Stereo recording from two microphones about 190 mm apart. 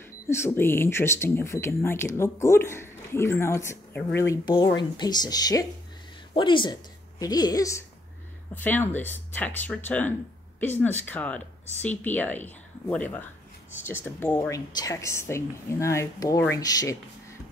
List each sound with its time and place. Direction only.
0.3 s a woman's voice: 15° left (ahead or behind)